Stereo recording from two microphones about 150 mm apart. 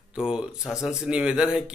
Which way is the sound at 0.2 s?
5° right (ahead or behind).